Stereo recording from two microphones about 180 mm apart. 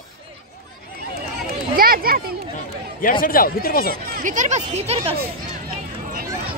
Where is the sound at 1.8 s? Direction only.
55° right (ahead or behind).